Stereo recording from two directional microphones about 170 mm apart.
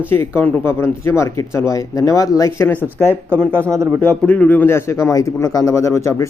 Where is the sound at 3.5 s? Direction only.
15° right (ahead or behind).